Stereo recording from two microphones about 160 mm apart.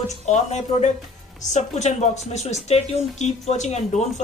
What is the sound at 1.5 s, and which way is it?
Speech, 45° left (ahead or behind).